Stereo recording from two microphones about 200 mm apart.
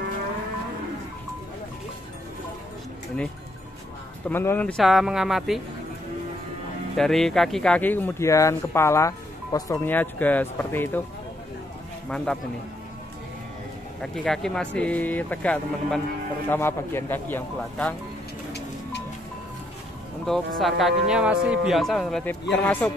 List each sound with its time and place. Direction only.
4.3 s speech: 10° left (ahead or behind)
7.0 s speech: centre (ahead or behind)
14.0 s speech: 5° left (ahead or behind)
18.5 s music: 60° left (ahead or behind)
20.2 s speech: centre (ahead or behind)